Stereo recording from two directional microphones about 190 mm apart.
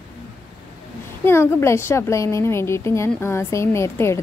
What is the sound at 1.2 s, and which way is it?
A woman's voice, 15° left (ahead or behind).